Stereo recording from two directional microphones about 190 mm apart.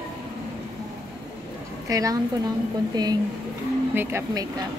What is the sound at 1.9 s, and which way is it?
Speech, 20° right (ahead or behind).